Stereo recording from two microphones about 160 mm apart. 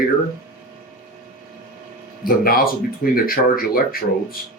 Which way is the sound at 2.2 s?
65° left (ahead or behind).